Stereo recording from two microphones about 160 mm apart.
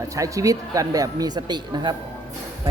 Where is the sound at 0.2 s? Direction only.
20° right (ahead or behind).